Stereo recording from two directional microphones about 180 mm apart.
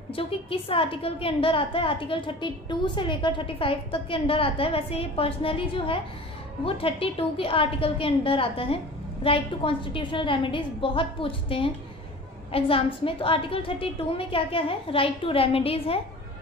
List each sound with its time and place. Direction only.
0.1 s a woman's voice: 30° left (ahead or behind)